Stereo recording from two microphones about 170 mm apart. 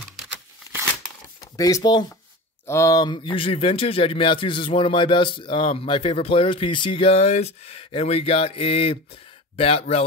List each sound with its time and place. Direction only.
1.6 s speech: 20° left (ahead or behind)